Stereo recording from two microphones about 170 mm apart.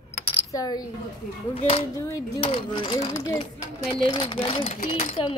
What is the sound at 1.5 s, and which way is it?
Speech, 35° left (ahead or behind).